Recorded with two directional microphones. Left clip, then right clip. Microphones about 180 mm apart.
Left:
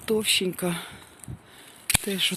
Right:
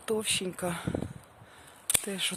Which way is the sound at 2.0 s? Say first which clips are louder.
Left 7 dB; centre (ahead or behind).